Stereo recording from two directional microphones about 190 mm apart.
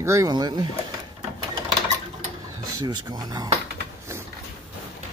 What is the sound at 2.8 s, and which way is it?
Speech, 20° right (ahead or behind).